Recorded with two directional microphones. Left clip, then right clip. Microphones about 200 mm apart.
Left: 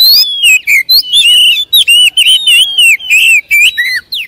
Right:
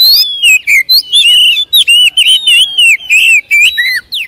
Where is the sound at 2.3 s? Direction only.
30° left (ahead or behind).